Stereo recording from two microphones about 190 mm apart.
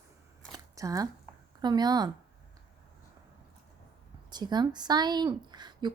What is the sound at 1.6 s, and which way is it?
Speech, 20° right (ahead or behind).